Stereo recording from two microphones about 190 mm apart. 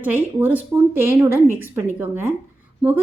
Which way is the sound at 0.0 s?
10° right (ahead or behind).